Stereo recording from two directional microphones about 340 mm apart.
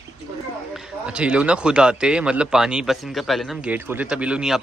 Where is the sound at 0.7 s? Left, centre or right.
Centre.